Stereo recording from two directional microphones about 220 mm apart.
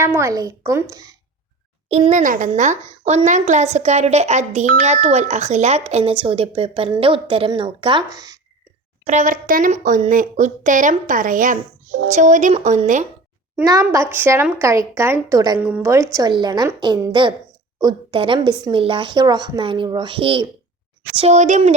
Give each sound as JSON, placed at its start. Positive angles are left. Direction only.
{"t": 0.0, "sound": "speech", "side_deg": -10}
{"t": 1.9, "sound": "a woman's voice", "side_deg": -30}
{"t": 9.0, "sound": "a woman's voice", "side_deg": -35}
{"t": 13.6, "sound": "a woman's voice", "side_deg": -10}